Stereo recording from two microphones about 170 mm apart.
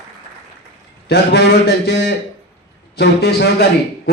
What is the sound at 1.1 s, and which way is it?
A man's voice, 75° left (ahead or behind).